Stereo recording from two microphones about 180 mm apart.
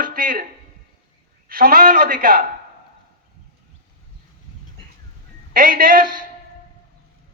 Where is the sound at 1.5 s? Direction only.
55° right (ahead or behind).